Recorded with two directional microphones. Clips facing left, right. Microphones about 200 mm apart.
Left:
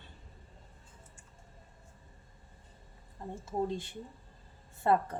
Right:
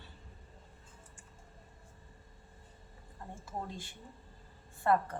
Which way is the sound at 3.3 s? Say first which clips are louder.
Left 9 dB; 25° left (ahead or behind).